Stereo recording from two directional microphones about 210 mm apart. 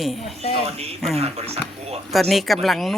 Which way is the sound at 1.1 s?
30° right (ahead or behind).